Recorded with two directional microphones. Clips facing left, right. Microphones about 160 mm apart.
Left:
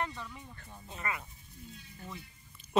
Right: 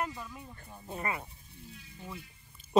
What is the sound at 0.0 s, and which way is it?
Speech, 10° right (ahead or behind).